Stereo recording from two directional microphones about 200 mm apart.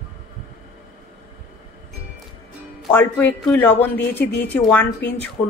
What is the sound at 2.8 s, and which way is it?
A woman's voice, 10° left (ahead or behind).